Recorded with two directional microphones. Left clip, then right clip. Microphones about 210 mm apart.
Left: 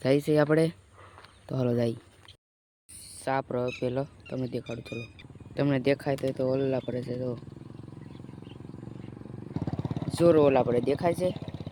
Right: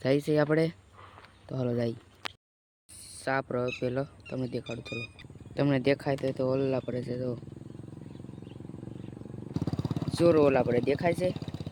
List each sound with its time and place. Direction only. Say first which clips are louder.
0.0 s speech: left 2 dB; 10° left (ahead or behind)
1.2 s a sound: left 3 dB; 15° left (ahead or behind)
3.0 s a sound: left 1 dB; centre (ahead or behind)
3.8 s speech: left 1 dB; centre (ahead or behind)
4.9 s a sound: right 2 dB; 20° right (ahead or behind)
5.5 s speech: even; centre (ahead or behind)
9.5 s vehicle: right 1 dB; 55° right (ahead or behind)
10.2 s speech: left 2 dB; 5° left (ahead or behind)
11.3 s vehicle: even; 60° right (ahead or behind)